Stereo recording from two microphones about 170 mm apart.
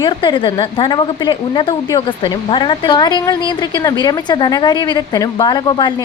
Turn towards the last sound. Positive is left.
turn(degrees=25)  # may be behind; listen again after turning